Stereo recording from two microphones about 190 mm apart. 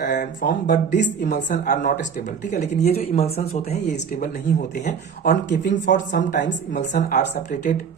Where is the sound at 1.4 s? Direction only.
40° left (ahead or behind).